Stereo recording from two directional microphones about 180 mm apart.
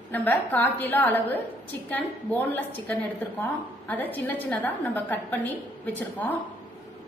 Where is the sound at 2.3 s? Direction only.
10° left (ahead or behind).